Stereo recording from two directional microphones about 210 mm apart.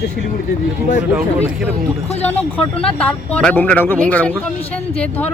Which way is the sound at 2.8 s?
5° left (ahead or behind).